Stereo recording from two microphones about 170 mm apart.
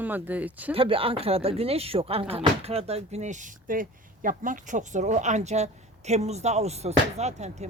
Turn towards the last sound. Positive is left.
turn(degrees=-40)  # may be behind; listen again after turning